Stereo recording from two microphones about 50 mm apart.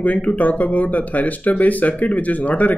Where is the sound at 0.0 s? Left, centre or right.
Left.